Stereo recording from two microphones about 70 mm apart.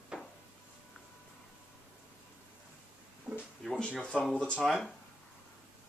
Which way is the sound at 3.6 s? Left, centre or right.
Centre.